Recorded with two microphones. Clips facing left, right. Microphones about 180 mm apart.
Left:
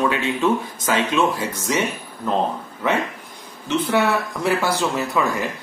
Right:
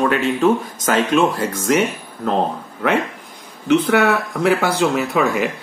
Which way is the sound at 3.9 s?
70° right (ahead or behind).